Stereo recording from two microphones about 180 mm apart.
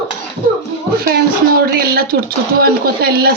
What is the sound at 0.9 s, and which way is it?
Speech, 60° right (ahead or behind).